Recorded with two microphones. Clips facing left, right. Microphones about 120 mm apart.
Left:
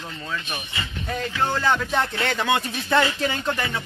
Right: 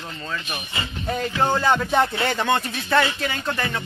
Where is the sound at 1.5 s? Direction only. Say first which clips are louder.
Right 3 dB; 15° right (ahead or behind).